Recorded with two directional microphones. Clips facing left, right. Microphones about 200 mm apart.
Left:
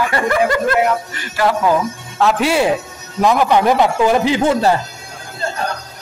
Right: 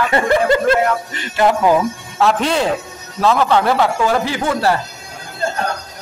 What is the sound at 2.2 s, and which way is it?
Speech, 5° left (ahead or behind).